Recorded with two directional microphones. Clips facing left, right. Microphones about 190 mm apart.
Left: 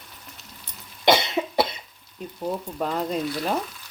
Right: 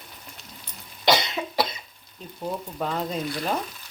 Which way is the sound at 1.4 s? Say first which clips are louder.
Left 5 dB; 25° left (ahead or behind).